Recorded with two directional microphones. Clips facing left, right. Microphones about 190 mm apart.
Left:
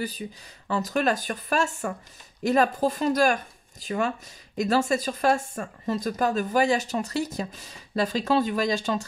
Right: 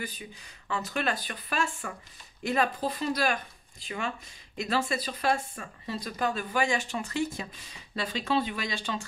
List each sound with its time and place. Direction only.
0.0 s speech: 35° left (ahead or behind)